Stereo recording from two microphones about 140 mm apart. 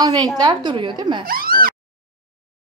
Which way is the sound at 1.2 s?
90° right.